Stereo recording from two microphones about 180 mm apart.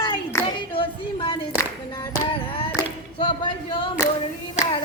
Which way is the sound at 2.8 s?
25° left (ahead or behind).